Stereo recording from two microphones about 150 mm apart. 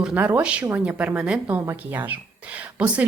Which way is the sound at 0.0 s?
10° right (ahead or behind).